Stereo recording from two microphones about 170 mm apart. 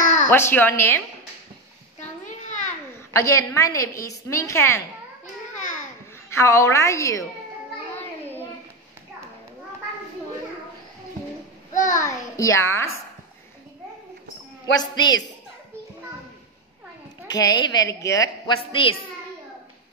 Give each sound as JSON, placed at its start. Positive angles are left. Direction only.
{"t": 0.0, "sound": "a sound", "side_deg": 45}
{"t": 0.3, "sound": "a woman's voice", "side_deg": 10}
{"t": 2.0, "sound": "a sound", "side_deg": 45}
{"t": 3.1, "sound": "a woman's voice", "side_deg": 15}
{"t": 6.3, "sound": "a woman's voice", "side_deg": 15}
{"t": 11.9, "sound": "a woman's voice", "side_deg": 15}
{"t": 14.8, "sound": "a woman's voice", "side_deg": 25}
{"t": 17.3, "sound": "a woman's voice", "side_deg": 25}
{"t": 18.6, "sound": "a woman's voice", "side_deg": 30}